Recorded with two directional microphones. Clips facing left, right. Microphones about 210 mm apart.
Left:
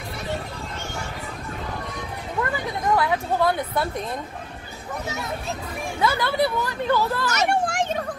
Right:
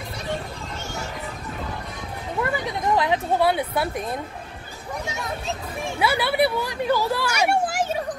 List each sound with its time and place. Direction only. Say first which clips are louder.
3.0 s a woman's voice: right 1 dB; 20° right (ahead or behind)
3.4 s speech: right 1 dB; 5° right (ahead or behind)
5.9 s speech: right 1 dB; 10° right (ahead or behind)